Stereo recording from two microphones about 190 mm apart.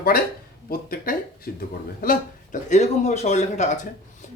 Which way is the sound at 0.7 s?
50° left (ahead or behind).